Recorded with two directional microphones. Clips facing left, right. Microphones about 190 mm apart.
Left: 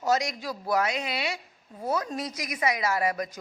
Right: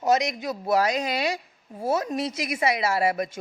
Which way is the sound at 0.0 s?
20° right (ahead or behind).